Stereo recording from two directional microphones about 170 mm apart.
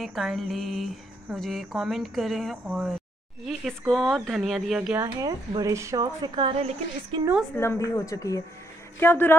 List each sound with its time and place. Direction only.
0.0 s speech: centre (ahead or behind)
5.2 s speech: 20° right (ahead or behind)
6.5 s a woman's voice: 40° right (ahead or behind)
7.5 s speech: 15° left (ahead or behind)